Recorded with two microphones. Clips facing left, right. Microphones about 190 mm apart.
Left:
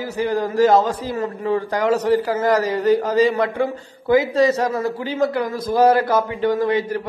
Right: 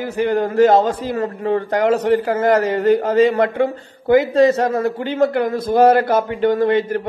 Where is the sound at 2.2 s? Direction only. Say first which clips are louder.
Right 3 dB; 55° right (ahead or behind).